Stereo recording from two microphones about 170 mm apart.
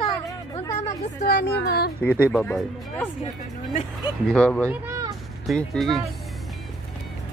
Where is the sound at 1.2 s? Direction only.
65° left (ahead or behind).